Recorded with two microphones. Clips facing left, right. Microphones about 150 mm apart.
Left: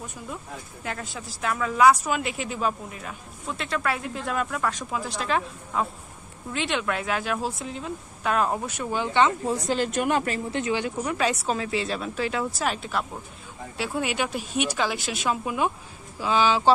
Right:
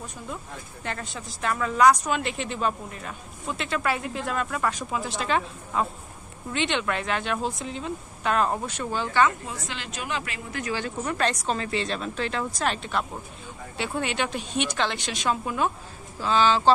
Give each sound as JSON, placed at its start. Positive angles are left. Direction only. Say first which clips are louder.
{"t": 0.8, "sound": "a woman's voice", "louder": "even", "side_deg": 5}
{"t": 9.5, "sound": "a woman's voice", "louder": "left 11 dB", "side_deg": 40}
{"t": 10.5, "sound": "a woman's voice", "louder": "left 1 dB", "side_deg": 20}
{"t": 11.1, "sound": "a woman's voice", "louder": "right 1 dB", "side_deg": 5}